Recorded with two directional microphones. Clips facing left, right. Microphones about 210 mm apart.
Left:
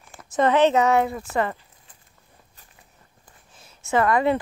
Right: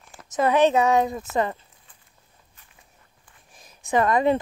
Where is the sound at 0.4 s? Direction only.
15° right (ahead or behind).